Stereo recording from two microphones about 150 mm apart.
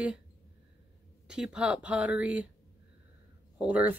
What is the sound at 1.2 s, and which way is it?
Speech, 5° right (ahead or behind).